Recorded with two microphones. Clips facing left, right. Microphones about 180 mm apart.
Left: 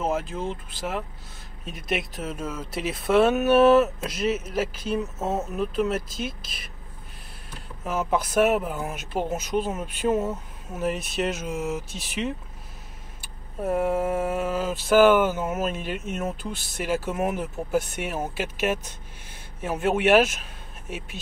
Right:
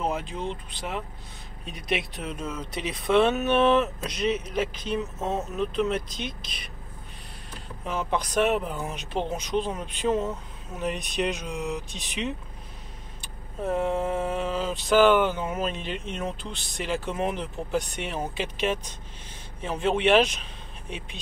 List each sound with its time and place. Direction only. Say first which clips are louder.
0.0 s speech: left 2 dB; 5° left (ahead or behind)
7.8 s speech: left 3 dB; 5° left (ahead or behind)
13.6 s a sound: left 2 dB; 10° left (ahead or behind)
20.9 s speech: left 2 dB; 5° left (ahead or behind)